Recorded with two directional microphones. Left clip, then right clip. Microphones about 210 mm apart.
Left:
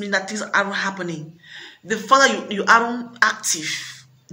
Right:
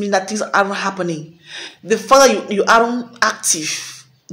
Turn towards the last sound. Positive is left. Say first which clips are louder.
# right 4 dB
turn(degrees=5)  # may be behind; listen again after turning